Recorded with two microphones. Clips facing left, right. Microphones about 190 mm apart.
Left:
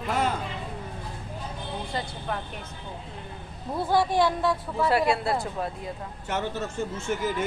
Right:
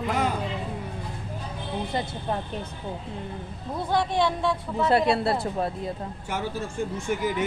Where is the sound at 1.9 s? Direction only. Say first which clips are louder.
Right 2 dB; 20° right (ahead or behind).